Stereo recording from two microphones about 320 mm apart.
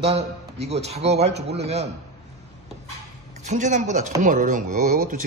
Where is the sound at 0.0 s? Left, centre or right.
Centre.